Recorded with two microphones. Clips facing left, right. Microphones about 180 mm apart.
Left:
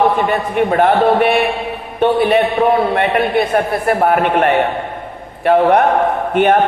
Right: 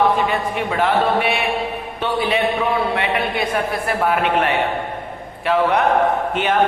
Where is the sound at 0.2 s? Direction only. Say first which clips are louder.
Left 5 dB; 50° left (ahead or behind).